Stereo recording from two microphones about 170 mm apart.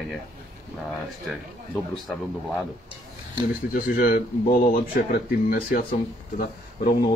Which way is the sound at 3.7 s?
55° left (ahead or behind).